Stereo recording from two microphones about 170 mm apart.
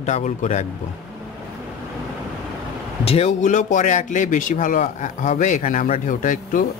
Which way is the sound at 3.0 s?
40° left (ahead or behind).